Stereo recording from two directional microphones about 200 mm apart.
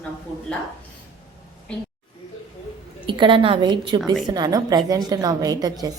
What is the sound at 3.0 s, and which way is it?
A woman's voice, 25° right (ahead or behind).